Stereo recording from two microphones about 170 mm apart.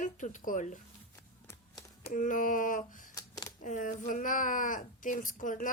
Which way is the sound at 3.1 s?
20° left (ahead or behind).